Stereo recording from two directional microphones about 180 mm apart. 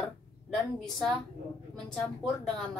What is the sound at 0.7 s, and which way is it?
A woman's voice, centre (ahead or behind).